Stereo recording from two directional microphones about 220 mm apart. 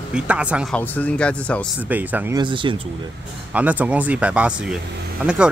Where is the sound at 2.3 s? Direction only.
20° right (ahead or behind).